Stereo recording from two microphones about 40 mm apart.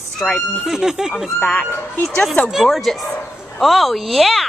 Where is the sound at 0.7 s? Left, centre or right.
Centre.